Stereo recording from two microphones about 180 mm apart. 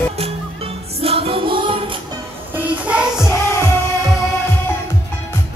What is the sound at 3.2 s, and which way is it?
Music, 15° left (ahead or behind).